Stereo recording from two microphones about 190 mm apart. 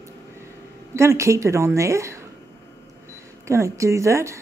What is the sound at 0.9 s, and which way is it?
A woman's voice, 15° right (ahead or behind).